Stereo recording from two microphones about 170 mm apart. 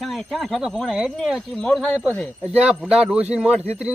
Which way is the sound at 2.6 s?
5° right (ahead or behind).